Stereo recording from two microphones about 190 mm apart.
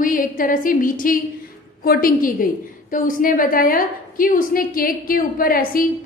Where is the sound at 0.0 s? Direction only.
45° left (ahead or behind).